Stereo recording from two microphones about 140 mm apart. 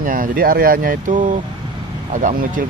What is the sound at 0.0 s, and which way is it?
Speech, 85° right.